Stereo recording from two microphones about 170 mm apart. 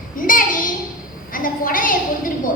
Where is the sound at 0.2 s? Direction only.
55° left (ahead or behind).